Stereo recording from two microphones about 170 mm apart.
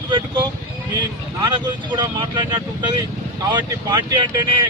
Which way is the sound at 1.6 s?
25° right (ahead or behind).